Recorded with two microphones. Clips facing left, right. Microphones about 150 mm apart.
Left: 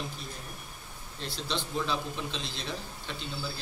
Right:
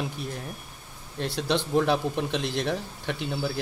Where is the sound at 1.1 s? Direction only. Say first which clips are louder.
Right 9 dB; 70° right (ahead or behind).